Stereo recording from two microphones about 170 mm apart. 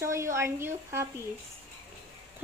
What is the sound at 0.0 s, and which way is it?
Speech, 15° right (ahead or behind).